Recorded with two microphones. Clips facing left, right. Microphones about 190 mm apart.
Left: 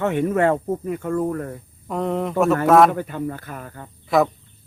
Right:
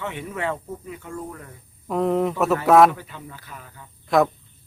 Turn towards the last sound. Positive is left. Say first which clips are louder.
# left 1 dB
turn(degrees=0)  # may be behind; listen again after turning